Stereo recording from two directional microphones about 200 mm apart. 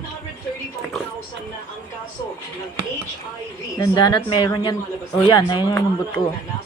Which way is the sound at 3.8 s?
20° left (ahead or behind).